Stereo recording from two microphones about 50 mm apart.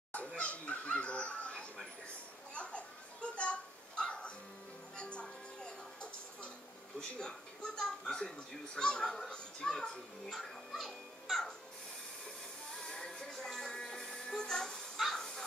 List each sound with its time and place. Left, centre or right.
0.4 s a sound: left
4.9 s music: centre
7.0 s a sound: centre
8.7 s a child's voice: centre
11.2 s music: centre
12.8 s music: centre
15.0 s dog: centre